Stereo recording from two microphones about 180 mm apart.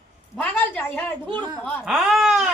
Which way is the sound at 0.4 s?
10° left (ahead or behind).